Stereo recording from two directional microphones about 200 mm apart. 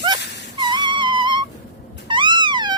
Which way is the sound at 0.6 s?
20° right (ahead or behind).